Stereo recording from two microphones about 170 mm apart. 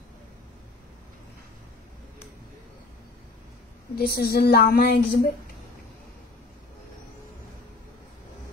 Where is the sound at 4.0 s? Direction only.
65° left (ahead or behind).